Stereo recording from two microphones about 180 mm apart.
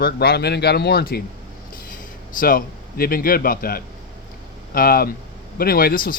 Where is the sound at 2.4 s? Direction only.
50° left (ahead or behind).